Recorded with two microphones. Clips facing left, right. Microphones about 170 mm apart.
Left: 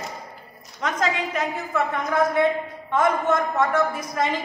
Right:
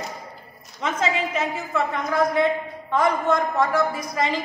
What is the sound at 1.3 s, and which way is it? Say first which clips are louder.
A woman's voice: even; centre (ahead or behind).